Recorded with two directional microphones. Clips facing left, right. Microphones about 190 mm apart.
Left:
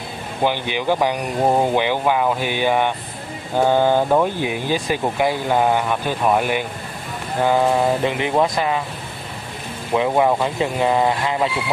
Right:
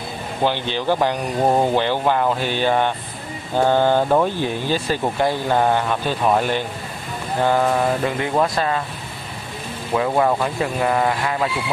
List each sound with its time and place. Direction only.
0.4 s speech: 15° left (ahead or behind)
9.9 s speech: 15° left (ahead or behind)